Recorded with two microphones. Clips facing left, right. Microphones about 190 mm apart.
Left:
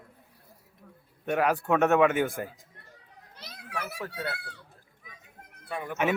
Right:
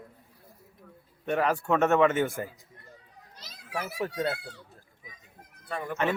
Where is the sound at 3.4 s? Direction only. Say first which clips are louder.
Left 6 dB; 65° left (ahead or behind).